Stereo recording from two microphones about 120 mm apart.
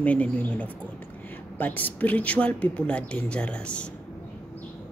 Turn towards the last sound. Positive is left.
turn(degrees=10)  # may be behind; listen again after turning